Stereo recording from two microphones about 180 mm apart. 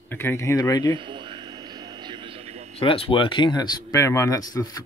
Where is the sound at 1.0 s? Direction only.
25° right (ahead or behind).